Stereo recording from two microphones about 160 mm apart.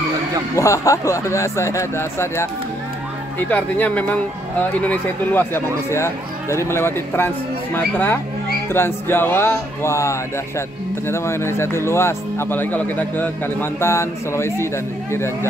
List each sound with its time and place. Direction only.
0.6 s speech: 20° left (ahead or behind)
3.4 s speech: 10° left (ahead or behind)